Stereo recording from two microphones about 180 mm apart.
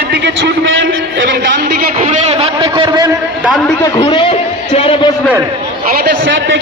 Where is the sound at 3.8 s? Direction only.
25° left (ahead or behind).